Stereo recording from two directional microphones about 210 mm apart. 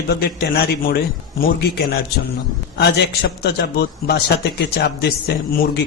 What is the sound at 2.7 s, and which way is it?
A man's voice, 55° left (ahead or behind).